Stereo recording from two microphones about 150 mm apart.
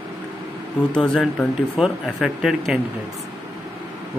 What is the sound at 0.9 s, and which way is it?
A man's voice, 5° left (ahead or behind).